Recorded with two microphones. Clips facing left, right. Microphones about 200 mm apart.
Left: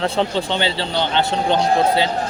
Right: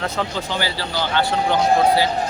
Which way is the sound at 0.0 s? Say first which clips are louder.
Left 5 dB; 30° left (ahead or behind).